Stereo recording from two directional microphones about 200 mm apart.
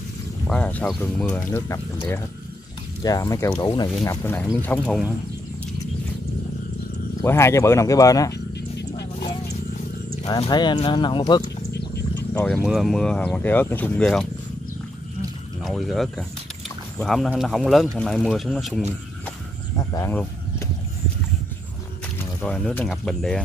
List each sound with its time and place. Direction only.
0.5 s speech: 5° left (ahead or behind)
3.0 s speech: 20° left (ahead or behind)
7.2 s speech: 15° left (ahead or behind)
8.5 s a sound: 55° left (ahead or behind)
10.2 s speech: 20° left (ahead or behind)
12.2 s wild animals: 10° left (ahead or behind)
12.6 s speech: centre (ahead or behind)
15.6 s speech: centre (ahead or behind)
19.9 s a sound: 15° left (ahead or behind)
22.2 s speech: 5° left (ahead or behind)